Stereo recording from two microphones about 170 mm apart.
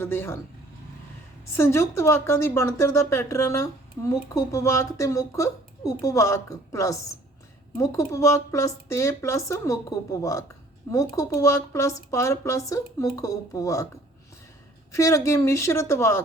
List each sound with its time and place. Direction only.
0.0 s speech: 15° left (ahead or behind)
1.5 s speech: 15° left (ahead or behind)
14.9 s speech: 20° left (ahead or behind)